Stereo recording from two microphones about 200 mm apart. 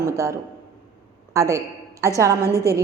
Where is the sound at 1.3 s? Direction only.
15° right (ahead or behind).